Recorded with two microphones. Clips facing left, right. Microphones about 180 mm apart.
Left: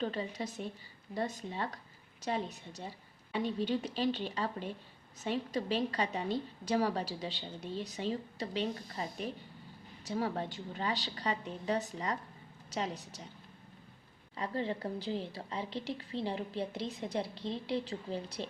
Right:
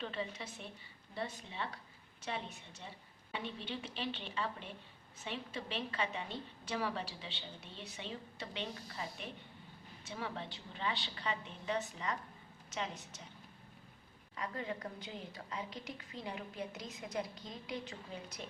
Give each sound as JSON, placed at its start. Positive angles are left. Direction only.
{"t": 0.0, "sound": "a woman's voice", "side_deg": 40}
{"t": 14.3, "sound": "a woman's voice", "side_deg": 30}